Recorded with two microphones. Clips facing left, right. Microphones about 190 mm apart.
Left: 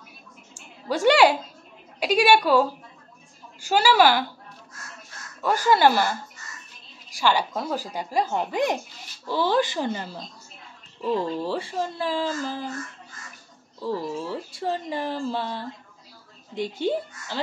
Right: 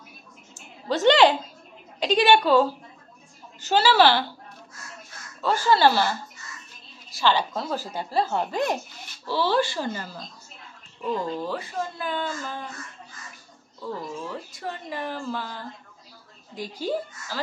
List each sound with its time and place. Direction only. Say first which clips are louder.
0.6 s a woman's voice: even; 10° left (ahead or behind)
5.4 s a woman's voice: left 1 dB; 15° left (ahead or behind); by 12.6 s 30° left (ahead or behind)
14.2 s speech: left 4 dB; 30° left (ahead or behind)